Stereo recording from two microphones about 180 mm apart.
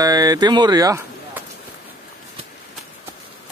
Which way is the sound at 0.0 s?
20° right (ahead or behind).